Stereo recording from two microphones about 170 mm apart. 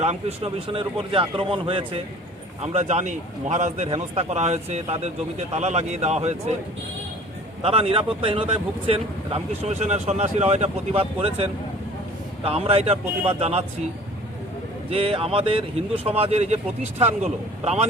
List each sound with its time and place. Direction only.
0.0 s speech: 40° right (ahead or behind)
7.6 s speech: 35° right (ahead or behind)
14.8 s speech: 35° right (ahead or behind)